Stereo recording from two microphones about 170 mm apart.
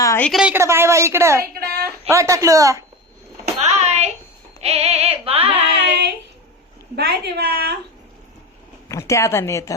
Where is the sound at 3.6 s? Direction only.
40° right (ahead or behind).